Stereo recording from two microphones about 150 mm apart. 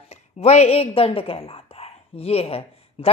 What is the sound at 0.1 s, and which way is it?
A woman's voice, 45° left (ahead or behind).